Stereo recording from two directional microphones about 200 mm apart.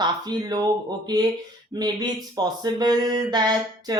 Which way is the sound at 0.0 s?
20° right (ahead or behind).